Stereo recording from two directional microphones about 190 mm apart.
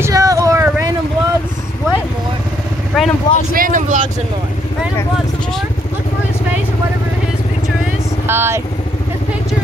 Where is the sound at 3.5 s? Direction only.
45° right (ahead or behind).